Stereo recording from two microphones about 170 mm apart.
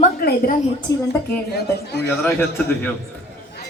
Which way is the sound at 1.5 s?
75° left (ahead or behind).